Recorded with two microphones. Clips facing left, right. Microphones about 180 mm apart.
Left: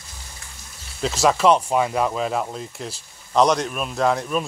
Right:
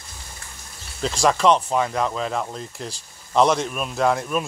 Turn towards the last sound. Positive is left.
turn(degrees=0)  # may be behind; listen again after turning